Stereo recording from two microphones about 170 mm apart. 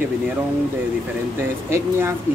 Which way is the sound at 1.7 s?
15° right (ahead or behind).